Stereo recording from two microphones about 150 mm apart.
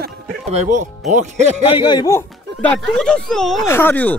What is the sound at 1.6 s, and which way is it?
Speech, 35° left (ahead or behind).